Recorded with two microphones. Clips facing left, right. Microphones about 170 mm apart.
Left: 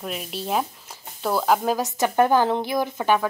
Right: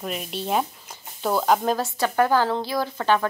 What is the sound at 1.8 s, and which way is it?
Speech, 20° left (ahead or behind).